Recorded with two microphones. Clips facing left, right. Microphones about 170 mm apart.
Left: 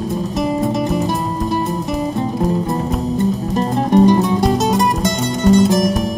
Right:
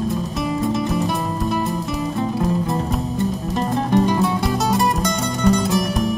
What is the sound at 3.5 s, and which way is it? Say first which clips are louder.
Music: left 5 dB; 20° left (ahead or behind).